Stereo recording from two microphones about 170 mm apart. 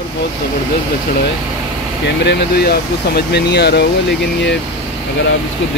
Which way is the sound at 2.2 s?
70° left (ahead or behind).